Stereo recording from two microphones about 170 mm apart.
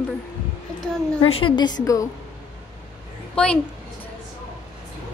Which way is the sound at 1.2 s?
30° left (ahead or behind).